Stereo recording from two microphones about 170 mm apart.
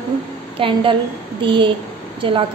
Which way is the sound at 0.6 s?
30° right (ahead or behind).